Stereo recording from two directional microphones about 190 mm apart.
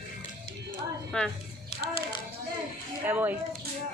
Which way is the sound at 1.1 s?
5° left (ahead or behind).